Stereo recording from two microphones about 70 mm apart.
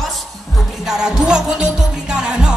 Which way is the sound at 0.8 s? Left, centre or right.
Centre.